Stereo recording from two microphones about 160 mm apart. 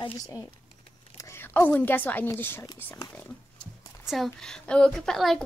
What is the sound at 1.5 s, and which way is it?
A child's voice, 10° left (ahead or behind).